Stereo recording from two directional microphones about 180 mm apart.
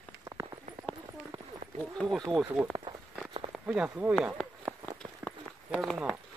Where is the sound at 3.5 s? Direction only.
5° right (ahead or behind).